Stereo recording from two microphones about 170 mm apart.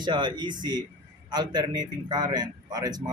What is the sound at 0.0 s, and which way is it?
A man's voice, 25° right (ahead or behind).